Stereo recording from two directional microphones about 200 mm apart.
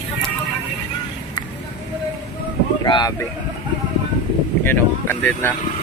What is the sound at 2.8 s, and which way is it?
Boat, 20° left (ahead or behind).